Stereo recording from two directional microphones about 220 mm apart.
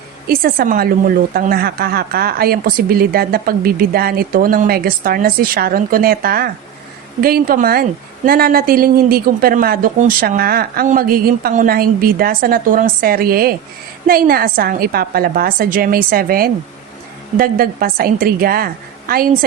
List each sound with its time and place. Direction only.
0.3 s a woman's voice: 45° right (ahead or behind)